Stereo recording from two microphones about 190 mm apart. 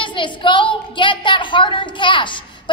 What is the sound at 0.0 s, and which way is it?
A woman's voice, 25° left (ahead or behind).